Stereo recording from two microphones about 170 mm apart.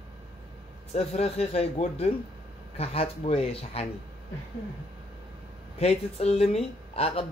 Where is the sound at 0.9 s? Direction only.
40° left (ahead or behind).